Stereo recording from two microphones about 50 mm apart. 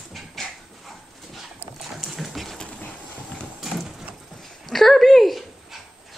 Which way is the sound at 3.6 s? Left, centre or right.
Centre.